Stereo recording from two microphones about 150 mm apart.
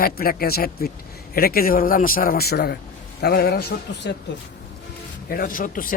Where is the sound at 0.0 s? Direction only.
80° left.